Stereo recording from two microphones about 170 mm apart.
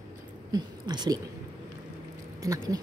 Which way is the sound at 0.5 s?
25° right (ahead or behind).